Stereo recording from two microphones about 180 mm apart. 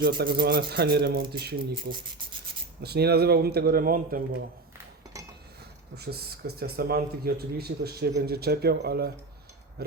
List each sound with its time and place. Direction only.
0.0 s speech: 60° right (ahead or behind)
5.9 s speech: 60° right (ahead or behind)